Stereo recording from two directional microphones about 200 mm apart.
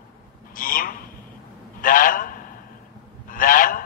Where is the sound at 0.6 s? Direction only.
45° left (ahead or behind).